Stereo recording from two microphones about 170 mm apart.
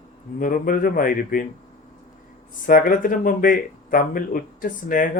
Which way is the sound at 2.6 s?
55° left (ahead or behind).